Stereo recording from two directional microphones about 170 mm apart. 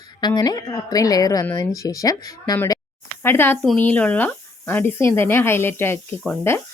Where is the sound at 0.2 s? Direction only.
25° left (ahead or behind).